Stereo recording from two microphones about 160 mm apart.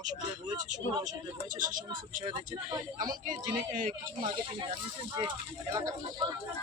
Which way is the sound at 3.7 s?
55° right (ahead or behind).